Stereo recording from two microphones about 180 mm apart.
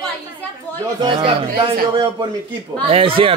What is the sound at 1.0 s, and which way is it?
Speech, 30° right (ahead or behind).